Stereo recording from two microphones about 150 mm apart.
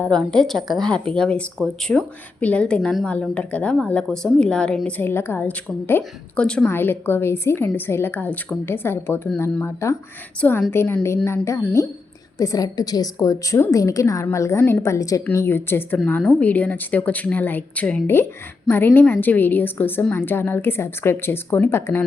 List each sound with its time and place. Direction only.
0.0 s a woman's voice: 5° left (ahead or behind)